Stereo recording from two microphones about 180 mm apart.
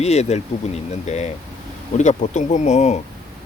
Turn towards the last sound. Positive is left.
turn(degrees=40)  # may be behind; listen again after turning